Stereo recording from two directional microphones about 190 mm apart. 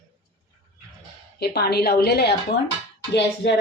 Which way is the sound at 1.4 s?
55° left (ahead or behind).